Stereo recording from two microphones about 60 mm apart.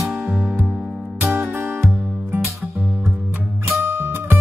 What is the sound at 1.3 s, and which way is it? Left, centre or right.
Music, right.